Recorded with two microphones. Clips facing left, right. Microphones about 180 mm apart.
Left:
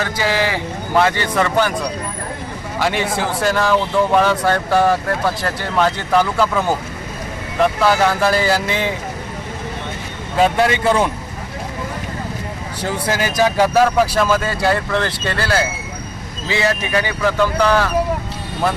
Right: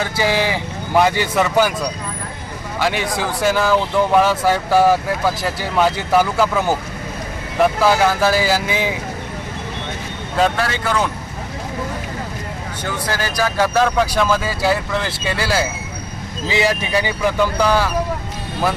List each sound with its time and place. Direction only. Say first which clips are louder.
0.0 s a man's voice: even; 15° right (ahead or behind)
2.7 s speech: left 1 dB; centre (ahead or behind)
10.6 s speech: left 5 dB; 25° left (ahead or behind)
12.8 s speech: left 3 dB; 25° left (ahead or behind)
13.7 s a man's voice: even; 5° left (ahead or behind)